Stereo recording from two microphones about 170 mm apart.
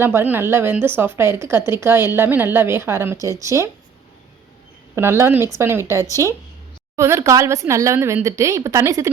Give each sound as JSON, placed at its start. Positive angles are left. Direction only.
{"t": 0.0, "sound": "a woman's voice", "side_deg": -10}
{"t": 4.9, "sound": "a woman's voice", "side_deg": -15}